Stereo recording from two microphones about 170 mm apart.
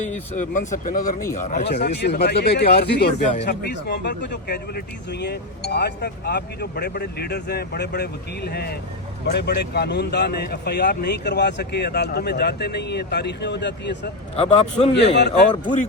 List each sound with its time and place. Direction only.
0.0 s speech: 45° left (ahead or behind)
1.6 s speech: 75° left (ahead or behind)
9.2 s speech: 80° left
14.3 s a man's voice: 35° left (ahead or behind)
14.9 s speech: 85° left